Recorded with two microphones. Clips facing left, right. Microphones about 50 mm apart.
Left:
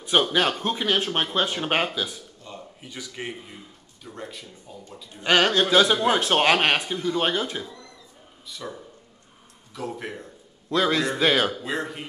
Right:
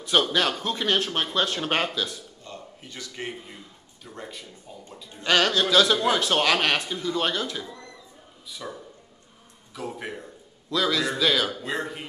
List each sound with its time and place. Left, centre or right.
0.0 s a man's voice: centre
1.0 s speech: left
3.4 s speech: centre
5.2 s a man's voice: centre
5.5 s a man's voice: left
8.5 s speech: centre
9.8 s speech: centre
10.7 s a man's voice: left
11.6 s speech: centre